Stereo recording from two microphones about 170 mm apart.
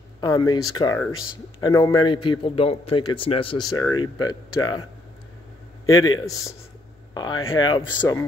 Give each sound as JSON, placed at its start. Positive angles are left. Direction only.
{"t": 0.2, "sound": "a man's voice", "side_deg": 25}
{"t": 3.7, "sound": "a man's voice", "side_deg": 20}
{"t": 5.9, "sound": "a man's voice", "side_deg": 20}
{"t": 8.0, "sound": "speech", "side_deg": 15}